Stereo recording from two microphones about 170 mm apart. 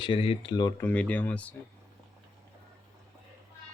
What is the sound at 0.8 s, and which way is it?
Speech, 10° left (ahead or behind).